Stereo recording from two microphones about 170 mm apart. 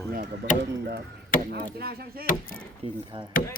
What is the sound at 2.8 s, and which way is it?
Speech, 35° right (ahead or behind).